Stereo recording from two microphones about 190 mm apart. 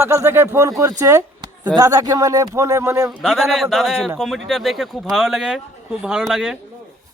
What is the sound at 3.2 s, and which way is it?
A man's voice, centre (ahead or behind).